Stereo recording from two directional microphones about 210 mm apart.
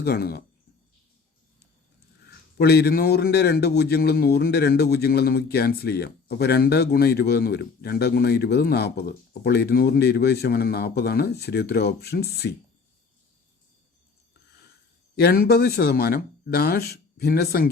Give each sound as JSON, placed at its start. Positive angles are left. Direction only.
{"t": 0.0, "sound": "speech", "side_deg": 50}
{"t": 2.6, "sound": "speech", "side_deg": 50}
{"t": 15.2, "sound": "speech", "side_deg": 45}